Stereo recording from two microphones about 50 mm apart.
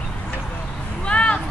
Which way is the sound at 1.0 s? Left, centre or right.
Left.